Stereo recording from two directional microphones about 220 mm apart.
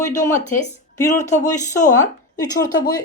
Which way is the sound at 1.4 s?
15° left (ahead or behind).